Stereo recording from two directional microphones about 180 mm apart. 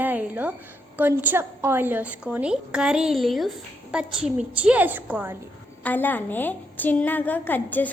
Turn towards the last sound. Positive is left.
turn(degrees=10)  # may be behind; listen again after turning